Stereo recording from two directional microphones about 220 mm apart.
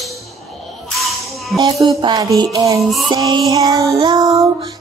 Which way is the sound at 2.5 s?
15° right (ahead or behind).